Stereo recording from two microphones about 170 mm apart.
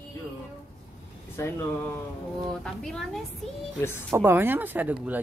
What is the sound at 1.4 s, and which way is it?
Speech, 15° left (ahead or behind).